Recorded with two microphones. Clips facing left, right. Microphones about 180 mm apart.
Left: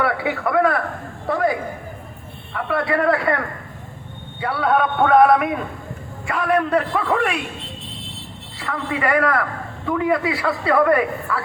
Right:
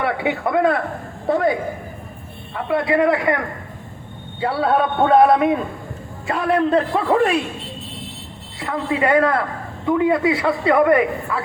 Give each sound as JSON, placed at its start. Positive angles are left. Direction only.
{"t": 0.0, "sound": "a man's voice", "side_deg": -20}
{"t": 8.5, "sound": "a man's voice", "side_deg": -25}